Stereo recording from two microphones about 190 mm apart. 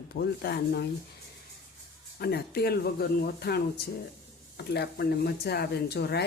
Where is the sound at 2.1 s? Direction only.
55° left (ahead or behind).